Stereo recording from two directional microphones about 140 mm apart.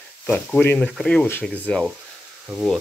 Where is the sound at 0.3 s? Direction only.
10° left (ahead or behind).